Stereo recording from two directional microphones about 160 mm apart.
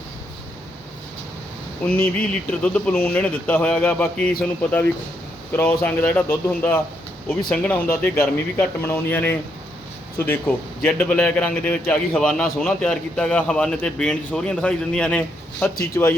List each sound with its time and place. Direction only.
1.8 s speech: 10° left (ahead or behind)
5.5 s a man's voice: 10° left (ahead or behind)